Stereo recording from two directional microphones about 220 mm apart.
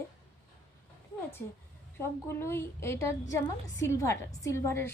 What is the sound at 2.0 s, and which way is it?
A woman's voice, 10° left (ahead or behind).